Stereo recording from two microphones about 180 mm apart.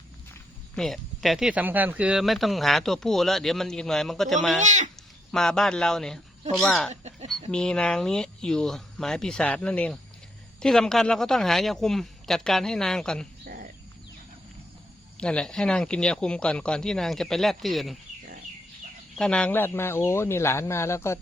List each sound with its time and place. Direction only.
0.8 s speech: centre (ahead or behind)
4.6 s speech: 40° right (ahead or behind)
5.3 s speech: 5° left (ahead or behind)
6.9 s chicken: 40° right (ahead or behind)
7.5 s speech: 5° left (ahead or behind)
13.4 s a sound: 55° right (ahead or behind)
15.2 s speech: 5° left (ahead or behind)
19.1 s speech: 5° left (ahead or behind)